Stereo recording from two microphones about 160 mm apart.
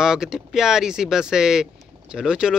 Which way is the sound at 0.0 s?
5° right (ahead or behind).